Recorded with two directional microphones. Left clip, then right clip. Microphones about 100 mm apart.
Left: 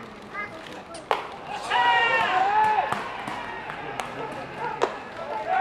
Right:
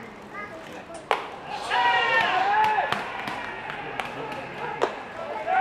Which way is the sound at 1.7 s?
20° left (ahead or behind).